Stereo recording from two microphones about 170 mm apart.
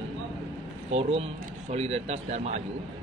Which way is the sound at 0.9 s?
35° right (ahead or behind).